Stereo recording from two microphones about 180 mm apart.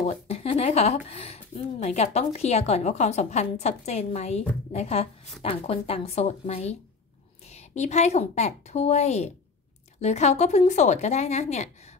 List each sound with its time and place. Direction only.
0.1 s speech: 35° left (ahead or behind)